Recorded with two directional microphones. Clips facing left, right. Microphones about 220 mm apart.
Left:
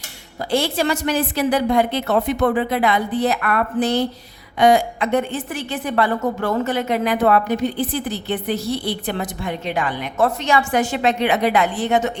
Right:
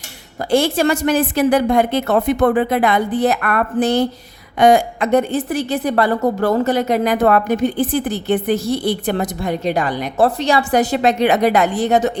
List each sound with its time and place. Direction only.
0.5 s a woman's voice: 50° right (ahead or behind)